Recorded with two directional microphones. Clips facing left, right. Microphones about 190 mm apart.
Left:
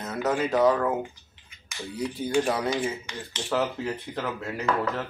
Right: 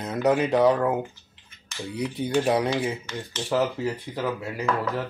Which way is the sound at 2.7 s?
15° left (ahead or behind).